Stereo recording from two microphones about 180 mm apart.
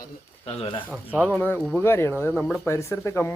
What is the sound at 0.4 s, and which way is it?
Speech, 30° left (ahead or behind).